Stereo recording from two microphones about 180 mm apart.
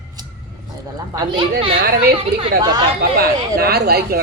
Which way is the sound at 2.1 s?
30° right (ahead or behind).